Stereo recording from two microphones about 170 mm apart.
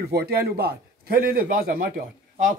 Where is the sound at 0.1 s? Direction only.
70° right (ahead or behind).